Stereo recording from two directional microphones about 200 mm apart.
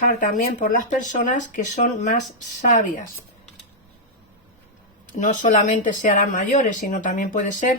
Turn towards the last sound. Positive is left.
turn(degrees=40)  # may be behind; listen again after turning